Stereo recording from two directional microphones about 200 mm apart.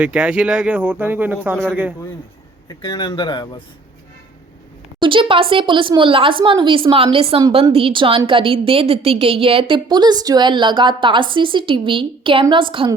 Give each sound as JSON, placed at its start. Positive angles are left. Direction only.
{"t": 0.0, "sound": "speech", "side_deg": -5}
{"t": 2.6, "sound": "speech", "side_deg": 20}
{"t": 4.9, "sound": "speech", "side_deg": -25}